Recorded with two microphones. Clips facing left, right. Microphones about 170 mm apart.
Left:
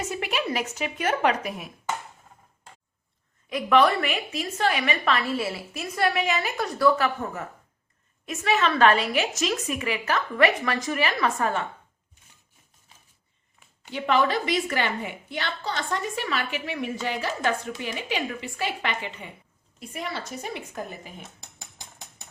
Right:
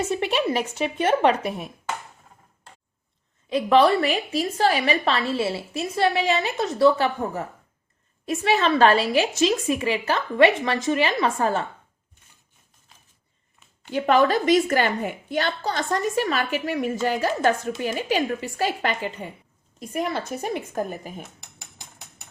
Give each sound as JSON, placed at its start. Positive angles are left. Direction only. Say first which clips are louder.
{"t": 0.0, "sound": "a woman's voice", "louder": "right 5 dB", "side_deg": -30}
{"t": 3.5, "sound": "a woman's voice", "louder": "right 3 dB", "side_deg": -30}
{"t": 13.9, "sound": "a woman's voice", "louder": "right 4 dB", "side_deg": -45}